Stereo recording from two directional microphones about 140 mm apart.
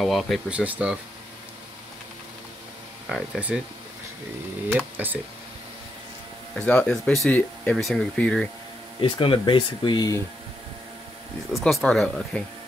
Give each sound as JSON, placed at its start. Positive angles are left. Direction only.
{"t": 0.0, "sound": "speech", "side_deg": 0}
{"t": 3.3, "sound": "speech", "side_deg": -10}
{"t": 4.6, "sound": "speech", "side_deg": -15}
{"t": 6.5, "sound": "speech", "side_deg": 10}
{"t": 9.0, "sound": "speech", "side_deg": 35}
{"t": 11.5, "sound": "speech", "side_deg": 0}